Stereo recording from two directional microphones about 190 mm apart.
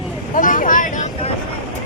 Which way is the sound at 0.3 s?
45° left (ahead or behind).